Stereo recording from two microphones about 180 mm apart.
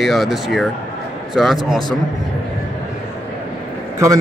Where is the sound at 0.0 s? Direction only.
Centre (ahead or behind).